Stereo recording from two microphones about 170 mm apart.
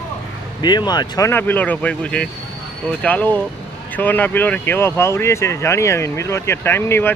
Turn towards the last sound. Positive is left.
turn(degrees=15)  # may be behind; listen again after turning